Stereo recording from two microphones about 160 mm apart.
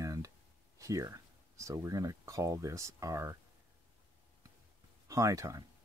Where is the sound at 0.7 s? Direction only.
20° right (ahead or behind).